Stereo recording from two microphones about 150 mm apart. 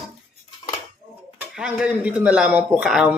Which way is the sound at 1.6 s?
10° right (ahead or behind).